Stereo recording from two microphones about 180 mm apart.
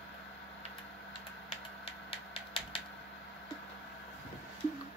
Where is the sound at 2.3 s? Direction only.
30° left (ahead or behind).